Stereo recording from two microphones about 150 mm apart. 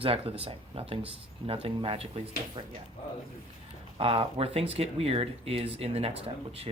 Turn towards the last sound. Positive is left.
turn(degrees=-40)  # may be behind; listen again after turning